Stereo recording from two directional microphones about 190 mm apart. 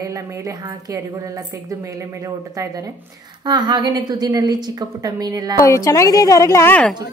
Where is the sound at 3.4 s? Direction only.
20° right (ahead or behind).